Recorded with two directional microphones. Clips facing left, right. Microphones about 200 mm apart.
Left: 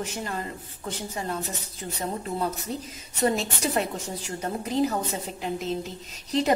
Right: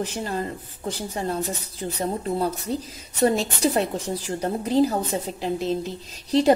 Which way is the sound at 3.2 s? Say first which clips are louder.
Right 5 dB; 35° right (ahead or behind).